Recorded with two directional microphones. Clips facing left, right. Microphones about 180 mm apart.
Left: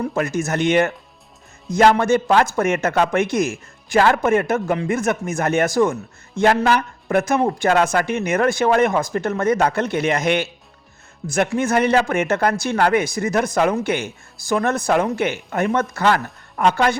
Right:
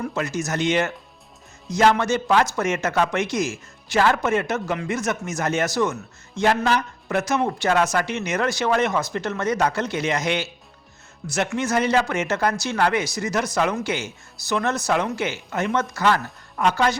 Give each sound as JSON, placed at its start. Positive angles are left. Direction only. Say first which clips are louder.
{"t": 0.1, "sound": "speech", "louder": "left 4 dB", "side_deg": 55}
{"t": 11.5, "sound": "speech", "louder": "left 3 dB", "side_deg": 55}